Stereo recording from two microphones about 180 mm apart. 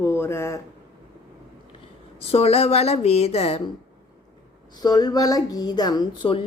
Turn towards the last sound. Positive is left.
turn(degrees=30)  # may be behind; listen again after turning